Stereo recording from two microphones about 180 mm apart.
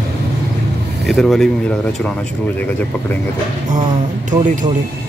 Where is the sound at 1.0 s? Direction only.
Centre (ahead or behind).